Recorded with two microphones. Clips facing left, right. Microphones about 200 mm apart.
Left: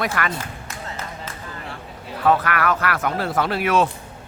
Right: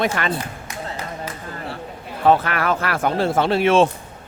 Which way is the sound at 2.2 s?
25° right (ahead or behind).